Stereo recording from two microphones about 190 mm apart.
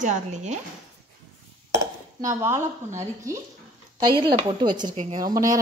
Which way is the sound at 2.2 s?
15° right (ahead or behind).